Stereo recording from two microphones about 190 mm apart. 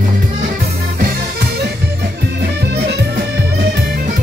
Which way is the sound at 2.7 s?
60° right (ahead or behind).